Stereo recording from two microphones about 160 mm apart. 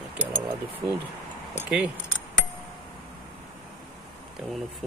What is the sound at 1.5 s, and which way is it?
Speech, 10° right (ahead or behind).